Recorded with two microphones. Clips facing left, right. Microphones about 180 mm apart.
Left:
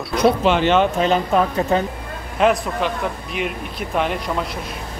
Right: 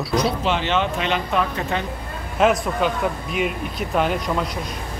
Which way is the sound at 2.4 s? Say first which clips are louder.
Even; centre (ahead or behind).